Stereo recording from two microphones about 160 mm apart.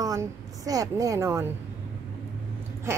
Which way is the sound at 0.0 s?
20° right (ahead or behind).